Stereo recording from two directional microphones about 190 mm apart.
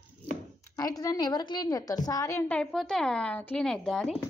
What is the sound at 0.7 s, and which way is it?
A woman's voice, 20° left (ahead or behind).